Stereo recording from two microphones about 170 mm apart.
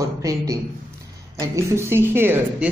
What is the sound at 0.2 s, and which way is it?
A man's voice, 20° right (ahead or behind).